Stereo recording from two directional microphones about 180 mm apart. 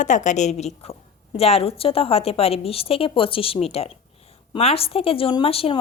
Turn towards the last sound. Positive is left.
turn(degrees=30)  # may be behind; listen again after turning